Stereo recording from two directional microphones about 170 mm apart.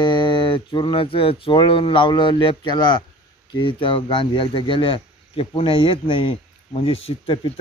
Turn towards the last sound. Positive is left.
turn(degrees=30)  # may be behind; listen again after turning